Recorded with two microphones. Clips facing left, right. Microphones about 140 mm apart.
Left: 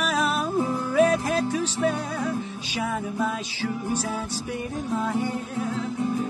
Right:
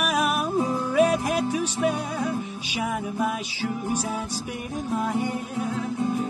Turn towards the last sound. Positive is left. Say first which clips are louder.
# even
turn(degrees=-20)  # may be behind; listen again after turning